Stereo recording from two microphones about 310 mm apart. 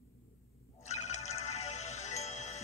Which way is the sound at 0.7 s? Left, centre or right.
Left.